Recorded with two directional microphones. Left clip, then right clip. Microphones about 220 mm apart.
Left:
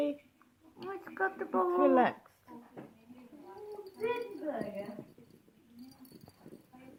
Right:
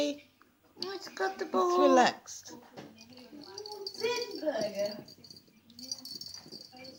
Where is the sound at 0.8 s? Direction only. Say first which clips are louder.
Right 1 dB; centre (ahead or behind).